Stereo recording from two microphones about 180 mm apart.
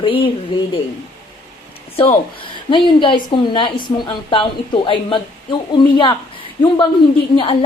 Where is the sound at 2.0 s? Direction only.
30° left (ahead or behind).